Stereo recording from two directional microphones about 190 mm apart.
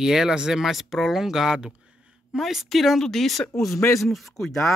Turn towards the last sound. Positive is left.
turn(degrees=0)  # may be behind; listen again after turning